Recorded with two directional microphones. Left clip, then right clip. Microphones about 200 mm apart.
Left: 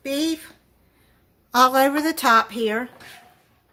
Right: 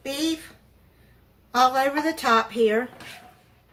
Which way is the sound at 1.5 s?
50° left (ahead or behind).